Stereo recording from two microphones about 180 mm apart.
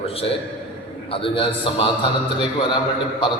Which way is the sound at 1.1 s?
30° left (ahead or behind).